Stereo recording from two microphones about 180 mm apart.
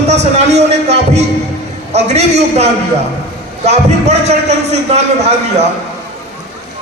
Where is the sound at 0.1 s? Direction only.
40° right (ahead or behind).